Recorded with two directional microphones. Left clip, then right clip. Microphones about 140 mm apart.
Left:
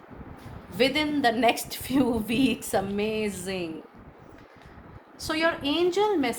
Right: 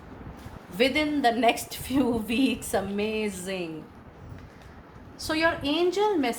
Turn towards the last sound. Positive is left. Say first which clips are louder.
# even
turn(degrees=45)  # may be behind; listen again after turning